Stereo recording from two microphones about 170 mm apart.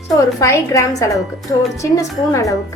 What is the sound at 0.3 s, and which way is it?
Speech, 20° left (ahead or behind).